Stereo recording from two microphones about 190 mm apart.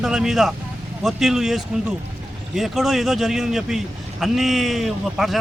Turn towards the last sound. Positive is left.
turn(degrees=0)  # may be behind; listen again after turning